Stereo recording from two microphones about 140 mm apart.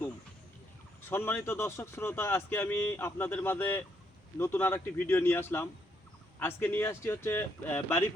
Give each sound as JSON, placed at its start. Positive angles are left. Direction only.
{"t": 1.1, "sound": "speech", "side_deg": 15}